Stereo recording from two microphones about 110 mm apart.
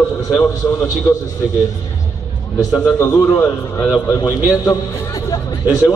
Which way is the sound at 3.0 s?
20° left (ahead or behind).